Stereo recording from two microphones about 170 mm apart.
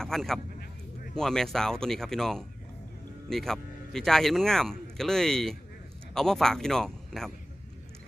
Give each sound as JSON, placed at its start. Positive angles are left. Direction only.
{"t": 0.0, "sound": "a man's voice", "side_deg": 0}